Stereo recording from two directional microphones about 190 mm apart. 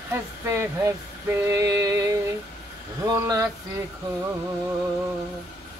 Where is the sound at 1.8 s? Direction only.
20° right (ahead or behind).